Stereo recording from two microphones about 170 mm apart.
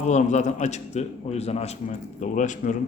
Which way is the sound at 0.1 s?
45° left (ahead or behind).